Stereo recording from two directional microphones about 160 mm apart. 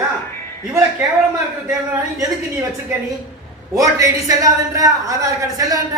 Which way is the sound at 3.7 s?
20° right (ahead or behind).